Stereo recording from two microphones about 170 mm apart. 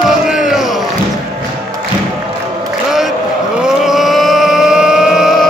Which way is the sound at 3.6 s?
5° right (ahead or behind).